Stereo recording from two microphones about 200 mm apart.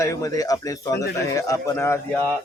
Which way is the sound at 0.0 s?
15° left (ahead or behind).